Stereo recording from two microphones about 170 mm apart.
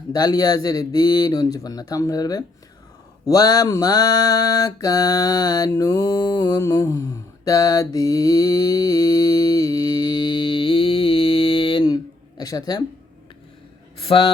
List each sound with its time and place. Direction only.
0.1 s mantra: 25° left (ahead or behind)
14.1 s speech: 35° left (ahead or behind)